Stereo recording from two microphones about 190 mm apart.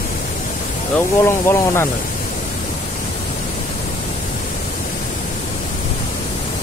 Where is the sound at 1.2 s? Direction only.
15° left (ahead or behind).